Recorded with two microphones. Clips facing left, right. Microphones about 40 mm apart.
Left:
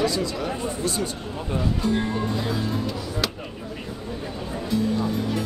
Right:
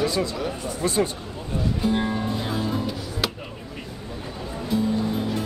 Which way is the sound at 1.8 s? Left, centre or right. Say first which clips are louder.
Right 3 dB; centre.